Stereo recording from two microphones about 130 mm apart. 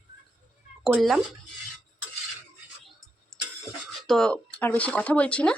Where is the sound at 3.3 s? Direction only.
5° left (ahead or behind).